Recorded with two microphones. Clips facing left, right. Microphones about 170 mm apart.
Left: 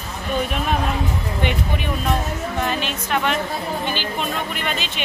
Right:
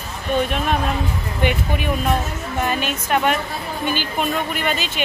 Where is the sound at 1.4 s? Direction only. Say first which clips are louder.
Right 4 dB; 5° right (ahead or behind).